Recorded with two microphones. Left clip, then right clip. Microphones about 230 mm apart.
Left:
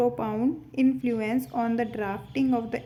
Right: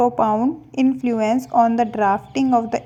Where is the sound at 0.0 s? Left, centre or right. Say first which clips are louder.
Right 9 dB; centre.